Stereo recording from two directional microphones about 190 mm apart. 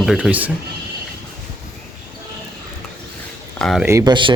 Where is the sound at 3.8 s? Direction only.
20° right (ahead or behind).